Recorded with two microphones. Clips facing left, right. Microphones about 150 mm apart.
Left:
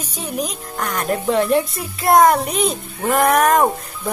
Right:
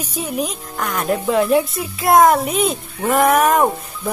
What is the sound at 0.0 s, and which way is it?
Speech, 5° right (ahead or behind).